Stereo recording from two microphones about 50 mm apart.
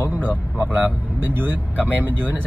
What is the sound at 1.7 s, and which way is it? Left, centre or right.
Speech, left.